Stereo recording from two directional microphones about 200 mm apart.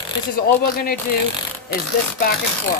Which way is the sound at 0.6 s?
45° left (ahead or behind).